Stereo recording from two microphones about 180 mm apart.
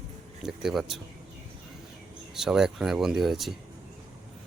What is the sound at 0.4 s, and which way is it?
Speech, centre (ahead or behind).